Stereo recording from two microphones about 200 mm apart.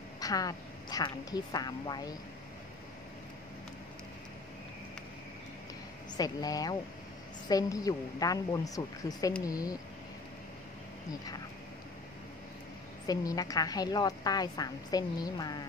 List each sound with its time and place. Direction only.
0.2 s a woman's voice: 20° left (ahead or behind)
6.1 s a woman's voice: 20° left (ahead or behind)
13.0 s a woman's voice: 20° left (ahead or behind)